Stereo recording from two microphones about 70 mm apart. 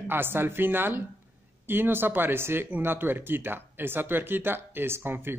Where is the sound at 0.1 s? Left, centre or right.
Right.